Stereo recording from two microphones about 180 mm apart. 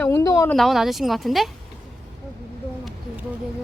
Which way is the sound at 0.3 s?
20° left (ahead or behind).